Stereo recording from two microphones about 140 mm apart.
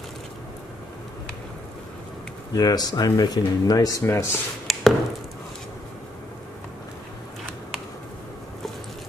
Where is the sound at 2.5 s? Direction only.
30° left (ahead or behind).